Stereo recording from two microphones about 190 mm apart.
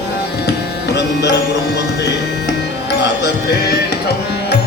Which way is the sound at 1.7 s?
60° left (ahead or behind).